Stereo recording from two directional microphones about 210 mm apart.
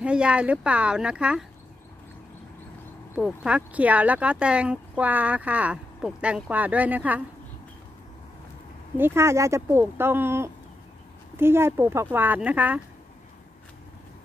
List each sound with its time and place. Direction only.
0.0 s a woman's voice: 5° right (ahead or behind)
3.2 s speech: 5° right (ahead or behind)
8.9 s speech: 10° right (ahead or behind)